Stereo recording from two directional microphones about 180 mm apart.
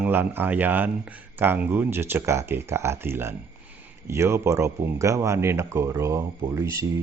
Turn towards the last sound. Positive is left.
turn(degrees=-15)  # may be behind; listen again after turning